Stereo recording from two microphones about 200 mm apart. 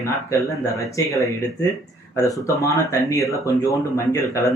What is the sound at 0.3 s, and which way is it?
Speech, 15° left (ahead or behind).